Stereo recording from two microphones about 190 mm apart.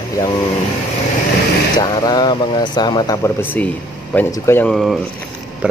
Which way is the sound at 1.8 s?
20° left (ahead or behind).